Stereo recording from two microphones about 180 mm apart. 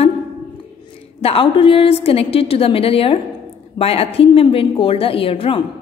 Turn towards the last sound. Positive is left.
turn(degrees=30)  # may be behind; listen again after turning